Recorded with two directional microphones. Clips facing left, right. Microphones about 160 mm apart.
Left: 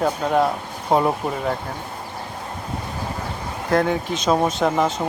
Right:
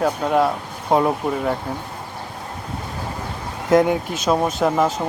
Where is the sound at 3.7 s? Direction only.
20° right (ahead or behind).